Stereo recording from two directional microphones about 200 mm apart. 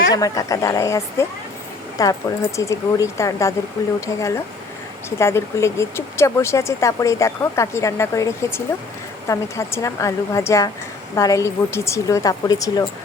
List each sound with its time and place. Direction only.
0.1 s speech: 15° left (ahead or behind)